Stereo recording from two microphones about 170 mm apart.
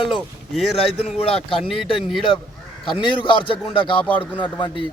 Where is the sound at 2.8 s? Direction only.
30° left (ahead or behind).